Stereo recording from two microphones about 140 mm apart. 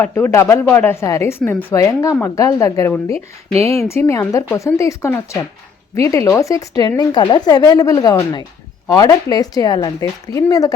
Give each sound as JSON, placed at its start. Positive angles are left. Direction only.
{"t": 0.0, "sound": "a woman's voice", "side_deg": 15}